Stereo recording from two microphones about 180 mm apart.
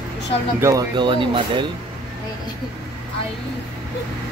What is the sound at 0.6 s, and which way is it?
Speech, 15° right (ahead or behind).